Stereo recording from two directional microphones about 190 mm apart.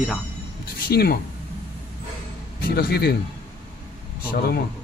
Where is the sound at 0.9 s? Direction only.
50° left (ahead or behind).